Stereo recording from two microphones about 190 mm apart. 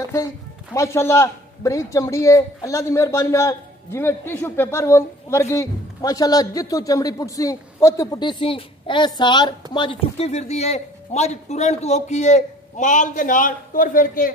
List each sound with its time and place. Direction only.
0.7 s speech: 15° left (ahead or behind); by 14.3 s 45° left (ahead or behind)